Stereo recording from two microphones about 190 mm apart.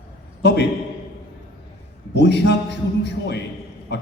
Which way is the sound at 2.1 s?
65° left (ahead or behind).